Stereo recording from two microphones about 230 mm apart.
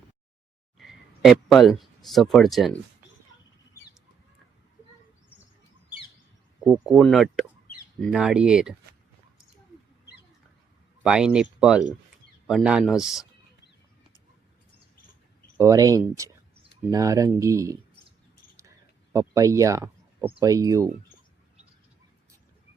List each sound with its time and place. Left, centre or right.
0.8 s speech: centre
6.7 s a man's voice: centre
11.0 s a man's voice: centre
15.5 s speech: centre
19.1 s speech: centre